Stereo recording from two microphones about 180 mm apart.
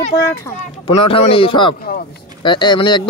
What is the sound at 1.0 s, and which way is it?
Speech, 30° left (ahead or behind).